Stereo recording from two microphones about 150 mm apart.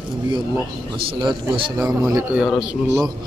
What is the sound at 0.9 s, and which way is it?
Speech, 35° right (ahead or behind).